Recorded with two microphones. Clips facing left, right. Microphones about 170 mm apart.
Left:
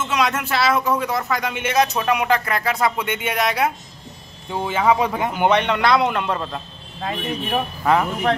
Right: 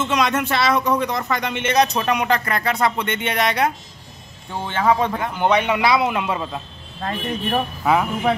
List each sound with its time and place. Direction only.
0.0 s speech: 5° left (ahead or behind)
5.5 s speech: 5° right (ahead or behind)